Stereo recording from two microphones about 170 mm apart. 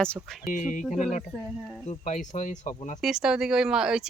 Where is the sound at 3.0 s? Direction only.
5° right (ahead or behind).